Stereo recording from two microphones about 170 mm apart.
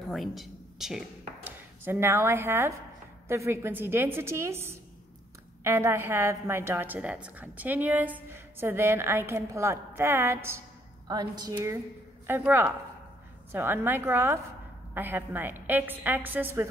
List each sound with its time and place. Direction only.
0.1 s speech: centre (ahead or behind)
1.9 s a woman's voice: 15° right (ahead or behind)